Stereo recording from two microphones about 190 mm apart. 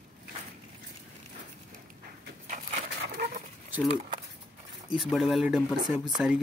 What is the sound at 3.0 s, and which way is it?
Dog, 55° right (ahead or behind).